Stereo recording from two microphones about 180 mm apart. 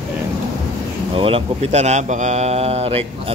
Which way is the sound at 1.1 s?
30° right (ahead or behind).